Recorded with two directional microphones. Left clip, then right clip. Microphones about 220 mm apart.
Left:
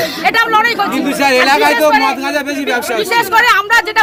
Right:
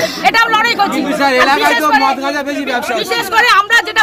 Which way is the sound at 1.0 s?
45° left (ahead or behind).